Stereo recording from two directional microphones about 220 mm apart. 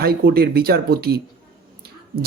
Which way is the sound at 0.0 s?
45° right (ahead or behind).